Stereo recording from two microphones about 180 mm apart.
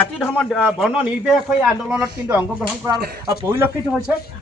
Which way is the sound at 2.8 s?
20° right (ahead or behind).